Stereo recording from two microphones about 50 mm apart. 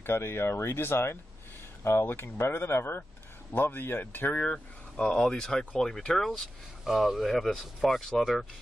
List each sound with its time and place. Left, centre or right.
0.0 s speech: left
4.9 s speech: centre
6.8 s speech: centre